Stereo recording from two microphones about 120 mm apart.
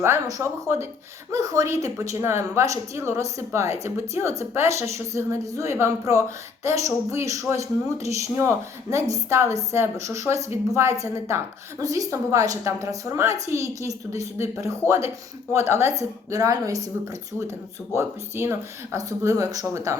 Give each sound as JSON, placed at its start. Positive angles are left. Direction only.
{"t": 0.0, "sound": "speech", "side_deg": -25}